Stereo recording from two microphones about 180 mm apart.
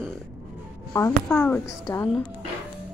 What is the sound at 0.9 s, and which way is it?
A woman's voice, 10° left (ahead or behind).